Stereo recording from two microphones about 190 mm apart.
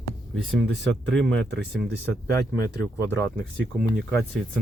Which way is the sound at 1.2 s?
70° right (ahead or behind).